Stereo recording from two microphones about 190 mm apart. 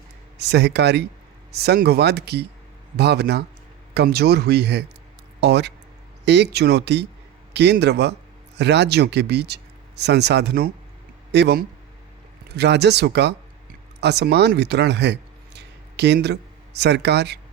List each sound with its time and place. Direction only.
0.3 s speech: 60° right (ahead or behind)